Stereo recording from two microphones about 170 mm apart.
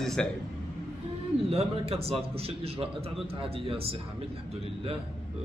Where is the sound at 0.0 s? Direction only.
5° left (ahead or behind).